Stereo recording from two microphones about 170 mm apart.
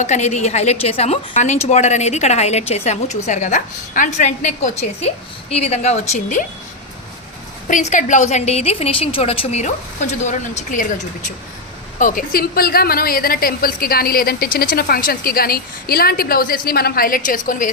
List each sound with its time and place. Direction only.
0.0 s a woman's voice: 40° left (ahead or behind)
7.7 s a woman's voice: 45° left (ahead or behind)